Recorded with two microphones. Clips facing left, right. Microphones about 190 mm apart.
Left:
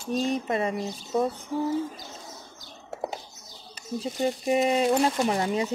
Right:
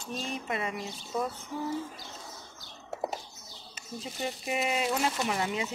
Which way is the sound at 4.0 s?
35° left (ahead or behind).